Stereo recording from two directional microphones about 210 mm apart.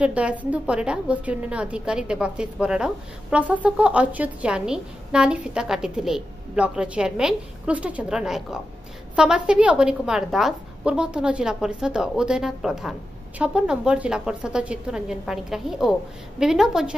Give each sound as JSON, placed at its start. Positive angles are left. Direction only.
{"t": 0.0, "sound": "a woman's voice", "side_deg": -5}